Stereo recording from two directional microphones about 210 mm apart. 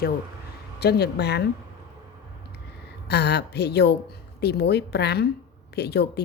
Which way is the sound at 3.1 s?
50° left (ahead or behind).